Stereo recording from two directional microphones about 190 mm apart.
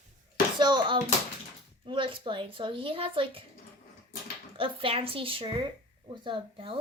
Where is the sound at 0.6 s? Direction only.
25° right (ahead or behind).